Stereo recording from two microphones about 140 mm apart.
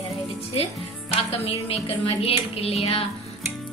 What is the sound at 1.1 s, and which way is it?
A woman's voice, 45° left (ahead or behind).